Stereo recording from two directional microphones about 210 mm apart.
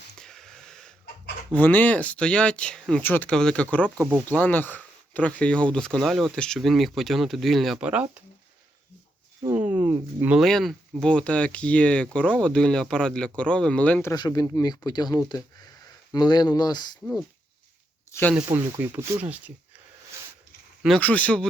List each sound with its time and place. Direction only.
0.2 s wheeze: 5° left (ahead or behind)
1.5 s speech: 10° left (ahead or behind)
3.8 s speech: 10° right (ahead or behind)
4.3 s speech: 10° left (ahead or behind)
9.8 s speech: 20° right (ahead or behind)
10.2 s speech: centre (ahead or behind); by 16.9 s 20° left (ahead or behind)
18.1 s speech: 10° left (ahead or behind)
18.4 s speech: 10° right (ahead or behind)
20.1 s a sound: 10° right (ahead or behind)
20.8 s speech: 5° left (ahead or behind)